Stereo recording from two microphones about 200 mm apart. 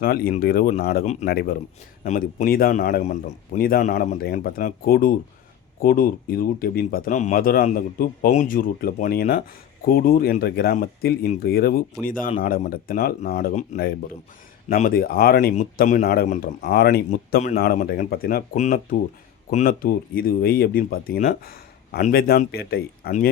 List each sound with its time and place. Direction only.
0.0 s speech: 50° left (ahead or behind)
1.0 s speech: 35° left (ahead or behind)
1.3 s speech: 50° left (ahead or behind)
17.6 s speech: 50° left (ahead or behind)